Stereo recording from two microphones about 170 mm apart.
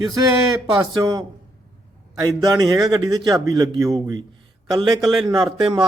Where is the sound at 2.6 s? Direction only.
20° right (ahead or behind).